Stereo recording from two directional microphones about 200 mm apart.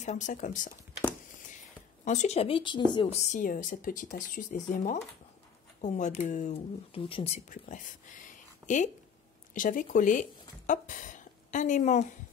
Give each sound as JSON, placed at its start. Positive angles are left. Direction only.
{"t": 0.0, "sound": "a woman's voice", "side_deg": 35}
{"t": 2.0, "sound": "a woman's voice", "side_deg": 35}